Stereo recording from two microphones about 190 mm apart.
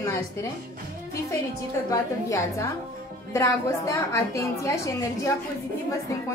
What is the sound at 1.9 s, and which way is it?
A woman's voice, 15° left (ahead or behind).